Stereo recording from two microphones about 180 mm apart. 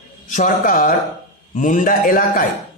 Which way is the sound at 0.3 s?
45° left (ahead or behind).